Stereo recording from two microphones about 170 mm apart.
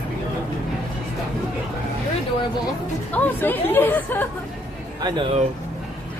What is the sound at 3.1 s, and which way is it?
Speech, 10° left (ahead or behind).